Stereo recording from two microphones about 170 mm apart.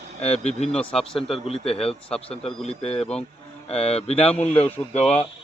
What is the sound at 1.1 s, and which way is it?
Speech, 35° left (ahead or behind).